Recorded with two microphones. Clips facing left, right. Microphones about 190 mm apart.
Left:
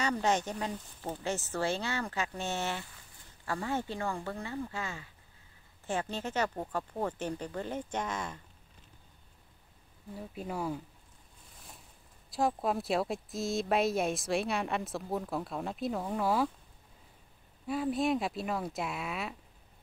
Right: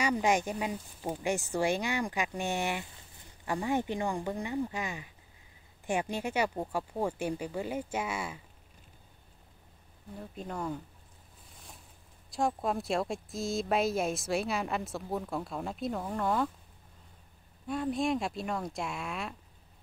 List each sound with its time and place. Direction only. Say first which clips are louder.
0.0 s speech: right 2 dB; 10° right (ahead or behind)
10.1 s speech: left 1 dB; 5° left (ahead or behind)
12.3 s speech: even; centre (ahead or behind)
17.6 s speech: even; centre (ahead or behind)